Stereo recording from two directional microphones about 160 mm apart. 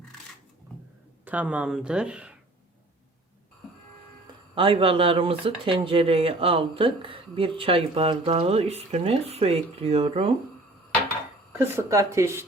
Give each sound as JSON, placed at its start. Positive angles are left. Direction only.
{"t": 1.2, "sound": "speech", "side_deg": -10}
{"t": 4.3, "sound": "speech", "side_deg": -35}
{"t": 11.5, "sound": "speech", "side_deg": -15}